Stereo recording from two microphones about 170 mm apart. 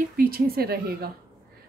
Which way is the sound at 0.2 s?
60° right (ahead or behind).